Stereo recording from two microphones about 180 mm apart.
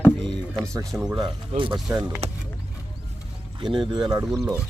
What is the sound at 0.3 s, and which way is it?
Music, 20° right (ahead or behind).